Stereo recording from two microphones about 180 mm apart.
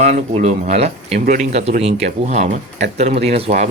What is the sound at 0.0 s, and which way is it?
Speech, 40° right (ahead or behind).